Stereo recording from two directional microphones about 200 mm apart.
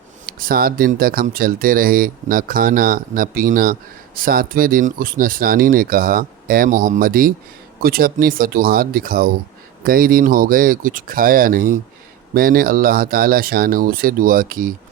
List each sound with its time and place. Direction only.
0.3 s speech: 45° right (ahead or behind)